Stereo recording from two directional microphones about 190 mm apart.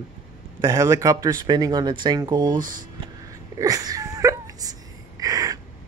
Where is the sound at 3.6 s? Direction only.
20° right (ahead or behind).